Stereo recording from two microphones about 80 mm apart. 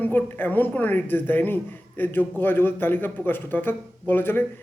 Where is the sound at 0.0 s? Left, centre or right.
Left.